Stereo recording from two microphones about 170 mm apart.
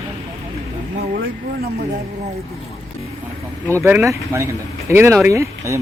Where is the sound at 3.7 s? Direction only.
15° right (ahead or behind).